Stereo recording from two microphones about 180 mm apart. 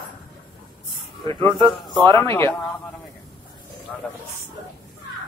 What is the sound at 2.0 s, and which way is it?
Speech, 25° right (ahead or behind).